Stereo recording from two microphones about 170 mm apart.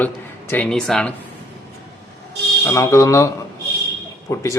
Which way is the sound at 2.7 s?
15° left (ahead or behind).